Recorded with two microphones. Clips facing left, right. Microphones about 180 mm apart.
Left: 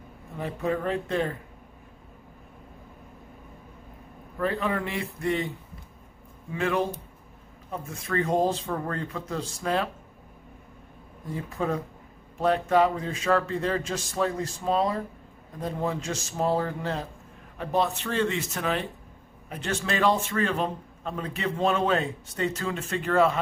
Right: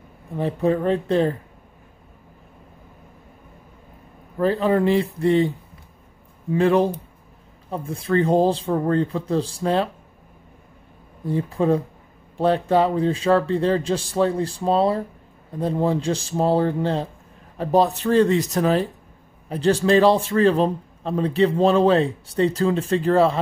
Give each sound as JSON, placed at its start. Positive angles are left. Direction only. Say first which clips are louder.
{"t": 0.4, "sound": "a man's voice", "louder": "right 8 dB", "side_deg": -30}
{"t": 4.4, "sound": "a man's voice", "louder": "right 9 dB", "side_deg": -30}
{"t": 6.5, "sound": "a man's voice", "louder": "right 9 dB", "side_deg": -35}
{"t": 11.2, "sound": "a man's voice", "louder": "right 9 dB", "side_deg": -30}